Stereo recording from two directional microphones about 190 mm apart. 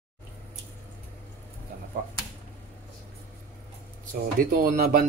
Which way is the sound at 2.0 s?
45° right (ahead or behind).